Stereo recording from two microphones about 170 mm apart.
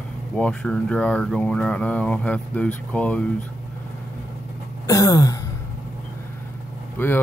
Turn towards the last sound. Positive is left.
turn(degrees=10)  # may be behind; listen again after turning